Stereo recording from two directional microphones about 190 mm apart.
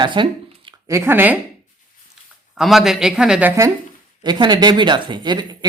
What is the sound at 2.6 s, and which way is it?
Speech, centre (ahead or behind).